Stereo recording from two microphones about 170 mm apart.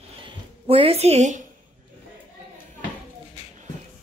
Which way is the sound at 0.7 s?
35° right (ahead or behind).